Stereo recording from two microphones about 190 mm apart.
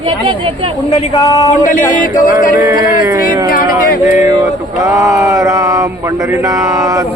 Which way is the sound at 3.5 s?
50° left (ahead or behind).